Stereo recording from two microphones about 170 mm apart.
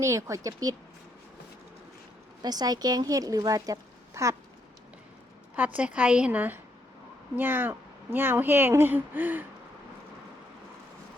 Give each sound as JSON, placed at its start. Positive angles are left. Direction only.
{"t": 0.0, "sound": "speech", "side_deg": -15}
{"t": 2.4, "sound": "speech", "side_deg": -25}
{"t": 5.5, "sound": "speech", "side_deg": -10}